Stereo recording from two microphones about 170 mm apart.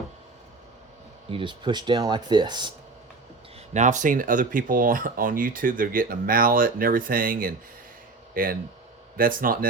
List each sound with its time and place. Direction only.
1.3 s speech: 30° right (ahead or behind)
3.8 s speech: 45° right (ahead or behind)